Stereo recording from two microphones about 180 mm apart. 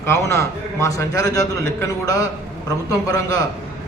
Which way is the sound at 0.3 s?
15° left (ahead or behind).